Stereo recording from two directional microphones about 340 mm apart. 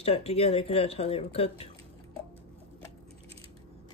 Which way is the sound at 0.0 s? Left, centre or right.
Centre.